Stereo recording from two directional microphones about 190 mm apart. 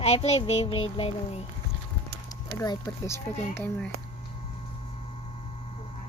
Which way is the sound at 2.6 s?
15° left (ahead or behind).